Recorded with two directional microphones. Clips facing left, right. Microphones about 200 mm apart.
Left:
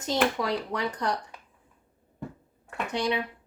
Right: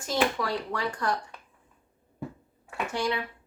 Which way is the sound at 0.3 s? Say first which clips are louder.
Left 2 dB; 20° left (ahead or behind).